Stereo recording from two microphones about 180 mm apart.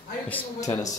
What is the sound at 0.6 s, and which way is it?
Speech, 20° left (ahead or behind).